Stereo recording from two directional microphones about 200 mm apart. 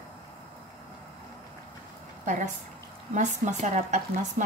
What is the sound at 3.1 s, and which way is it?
Speech, 35° right (ahead or behind).